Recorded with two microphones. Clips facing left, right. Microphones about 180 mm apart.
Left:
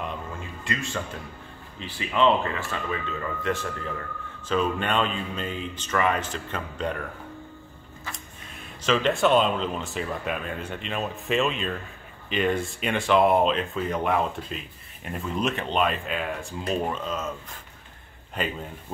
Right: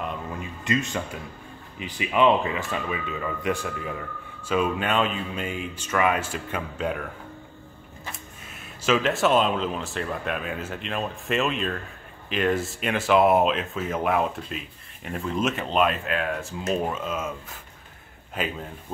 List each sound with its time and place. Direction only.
0.4 s speech: 20° right (ahead or behind)
8.1 s speech: 5° right (ahead or behind)
18.3 s speech: centre (ahead or behind)